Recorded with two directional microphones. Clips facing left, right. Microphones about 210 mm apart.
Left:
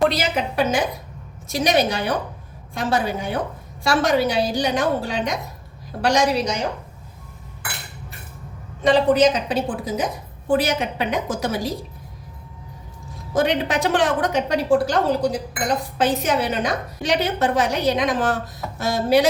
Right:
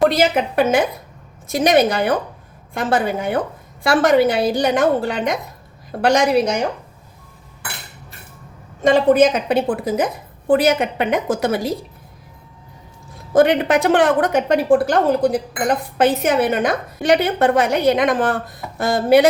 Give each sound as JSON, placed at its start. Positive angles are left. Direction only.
{"t": 0.1, "sound": "a woman's voice", "side_deg": -50}
{"t": 8.8, "sound": "a woman's voice", "side_deg": -50}
{"t": 13.3, "sound": "a woman's voice", "side_deg": -55}